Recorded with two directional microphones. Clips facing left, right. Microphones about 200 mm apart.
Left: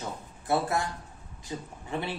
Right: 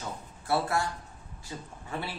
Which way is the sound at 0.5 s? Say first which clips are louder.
Left 1 dB; 20° left (ahead or behind).